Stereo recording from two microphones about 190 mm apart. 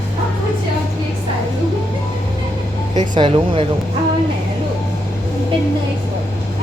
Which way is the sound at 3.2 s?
30° right (ahead or behind).